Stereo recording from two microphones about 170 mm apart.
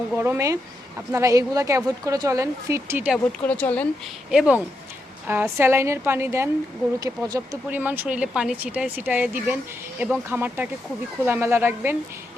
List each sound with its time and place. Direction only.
0.2 s speech: 15° right (ahead or behind)
3.4 s speech: 10° left (ahead or behind)
4.3 s speech: 5° right (ahead or behind)